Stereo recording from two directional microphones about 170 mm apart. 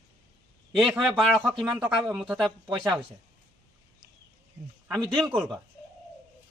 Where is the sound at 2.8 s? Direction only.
25° right (ahead or behind).